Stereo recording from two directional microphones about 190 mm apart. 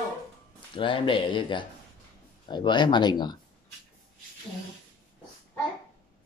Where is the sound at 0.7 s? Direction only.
25° left (ahead or behind).